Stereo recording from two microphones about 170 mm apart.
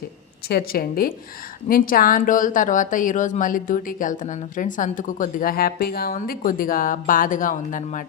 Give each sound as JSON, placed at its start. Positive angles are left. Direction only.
{"t": 0.4, "sound": "a woman's voice", "side_deg": 65}